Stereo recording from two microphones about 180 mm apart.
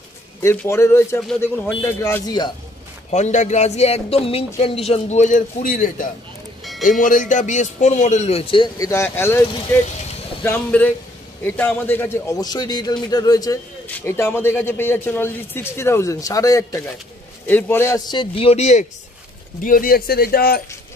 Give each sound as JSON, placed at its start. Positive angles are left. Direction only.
{"t": 0.4, "sound": "a man's voice", "side_deg": 15}
{"t": 3.1, "sound": "a man's voice", "side_deg": 40}
{"t": 10.4, "sound": "a man's voice", "side_deg": 10}
{"t": 18.1, "sound": "a man's voice", "side_deg": 30}
{"t": 19.6, "sound": "speech", "side_deg": 50}